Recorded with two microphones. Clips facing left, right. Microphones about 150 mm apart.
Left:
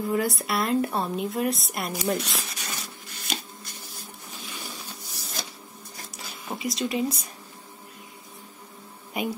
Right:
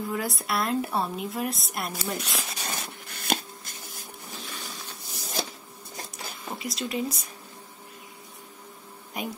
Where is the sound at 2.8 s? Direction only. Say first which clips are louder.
Right 2 dB; 55° right (ahead or behind).